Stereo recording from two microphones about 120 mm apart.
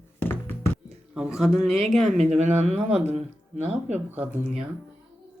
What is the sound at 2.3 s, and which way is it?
Speech, 65° right (ahead or behind).